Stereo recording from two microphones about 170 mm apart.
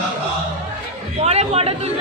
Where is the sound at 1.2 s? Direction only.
40° right (ahead or behind).